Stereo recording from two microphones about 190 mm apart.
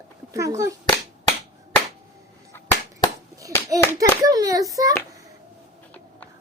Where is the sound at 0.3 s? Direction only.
15° right (ahead or behind).